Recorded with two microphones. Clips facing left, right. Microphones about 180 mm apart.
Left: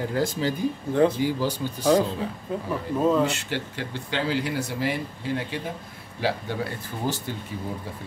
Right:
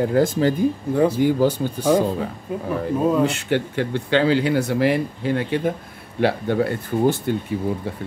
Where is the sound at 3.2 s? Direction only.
55° right (ahead or behind).